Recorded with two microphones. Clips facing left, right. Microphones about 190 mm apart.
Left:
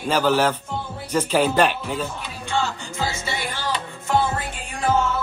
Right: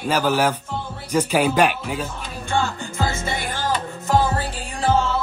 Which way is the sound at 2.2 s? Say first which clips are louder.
Right 2 dB; 50° right (ahead or behind).